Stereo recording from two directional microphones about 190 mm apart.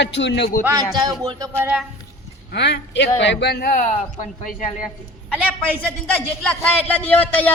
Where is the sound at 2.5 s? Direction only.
65° left (ahead or behind).